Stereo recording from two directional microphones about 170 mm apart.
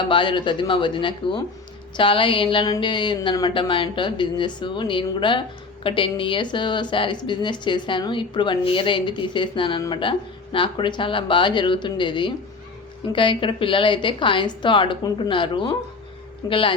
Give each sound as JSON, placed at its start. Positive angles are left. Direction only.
{"t": 0.1, "sound": "a woman's voice", "side_deg": 30}